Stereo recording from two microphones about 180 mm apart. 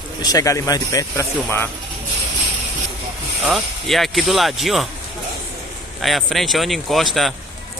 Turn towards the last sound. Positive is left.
turn(degrees=0)  # may be behind; listen again after turning